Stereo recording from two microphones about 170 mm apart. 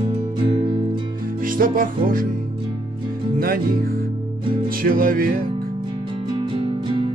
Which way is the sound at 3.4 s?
60° right (ahead or behind).